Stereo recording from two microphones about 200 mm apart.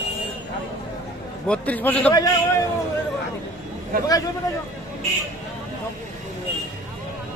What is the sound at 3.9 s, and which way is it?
Speech, 45° right (ahead or behind).